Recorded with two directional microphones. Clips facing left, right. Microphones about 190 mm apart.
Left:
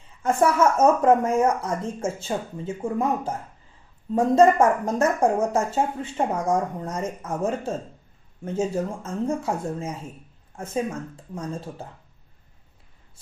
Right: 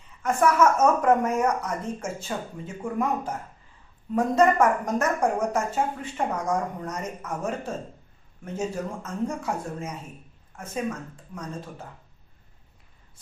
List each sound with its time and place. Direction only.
0.2 s speech: 30° left (ahead or behind)